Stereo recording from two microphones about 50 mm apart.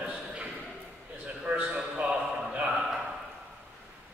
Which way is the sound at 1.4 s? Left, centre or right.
Right.